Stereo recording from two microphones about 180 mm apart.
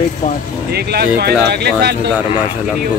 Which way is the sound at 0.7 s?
65° right (ahead or behind).